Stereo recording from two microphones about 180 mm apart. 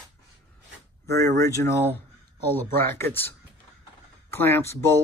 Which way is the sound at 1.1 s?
15° left (ahead or behind).